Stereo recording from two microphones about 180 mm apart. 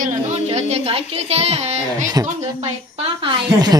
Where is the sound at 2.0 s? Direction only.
20° right (ahead or behind).